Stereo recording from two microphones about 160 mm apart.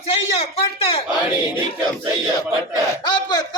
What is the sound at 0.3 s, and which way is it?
Speech, 40° left (ahead or behind).